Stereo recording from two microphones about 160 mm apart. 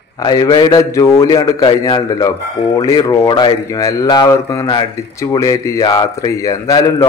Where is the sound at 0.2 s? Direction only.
25° left (ahead or behind).